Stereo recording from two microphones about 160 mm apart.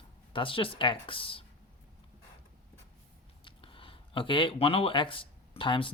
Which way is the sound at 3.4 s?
35° left (ahead or behind).